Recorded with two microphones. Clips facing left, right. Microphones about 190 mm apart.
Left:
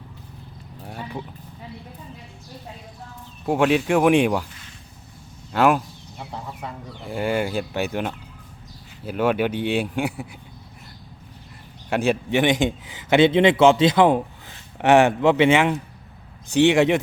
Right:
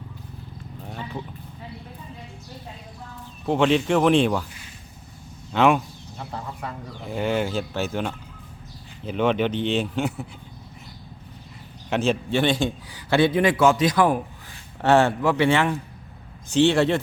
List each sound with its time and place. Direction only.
0.9 s a sound: 10° left (ahead or behind)
3.4 s speech: 5° left (ahead or behind)
5.5 s speech: 5° left (ahead or behind)
9.0 s speech: 5° left (ahead or behind)
11.9 s a man's voice: 15° left (ahead or behind)